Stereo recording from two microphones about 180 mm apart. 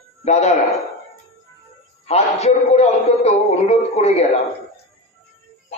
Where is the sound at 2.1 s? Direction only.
35° left (ahead or behind).